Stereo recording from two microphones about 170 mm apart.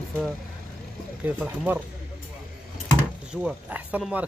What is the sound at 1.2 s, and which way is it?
Speech, 10° right (ahead or behind).